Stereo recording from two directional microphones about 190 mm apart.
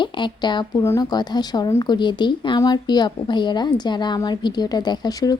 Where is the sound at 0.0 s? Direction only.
25° left (ahead or behind).